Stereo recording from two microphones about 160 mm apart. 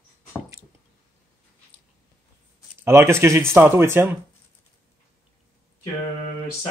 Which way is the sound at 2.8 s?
15° right (ahead or behind).